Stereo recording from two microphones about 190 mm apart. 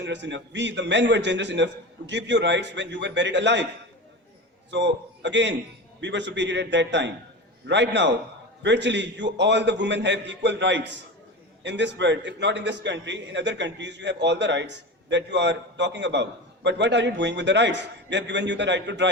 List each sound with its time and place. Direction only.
0.0 s a man's voice: 70° right (ahead or behind)
4.7 s a man's voice: 70° right (ahead or behind)